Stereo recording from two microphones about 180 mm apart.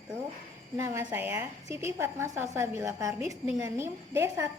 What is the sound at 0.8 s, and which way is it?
A woman's voice, 10° right (ahead or behind).